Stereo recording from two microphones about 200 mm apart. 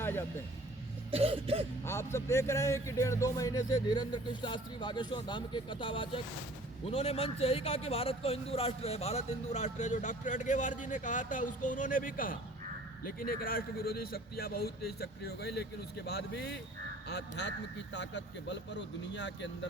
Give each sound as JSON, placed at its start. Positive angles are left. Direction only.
{"t": 0.0, "sound": "vehicle", "side_deg": 10}
{"t": 1.1, "sound": "a sound", "side_deg": -30}
{"t": 1.8, "sound": "a man's voice", "side_deg": 15}